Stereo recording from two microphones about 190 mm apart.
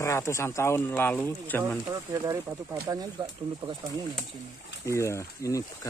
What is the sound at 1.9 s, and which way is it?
Speech, 20° right (ahead or behind).